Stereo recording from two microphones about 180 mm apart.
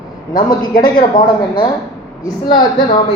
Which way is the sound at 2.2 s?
25° left (ahead or behind).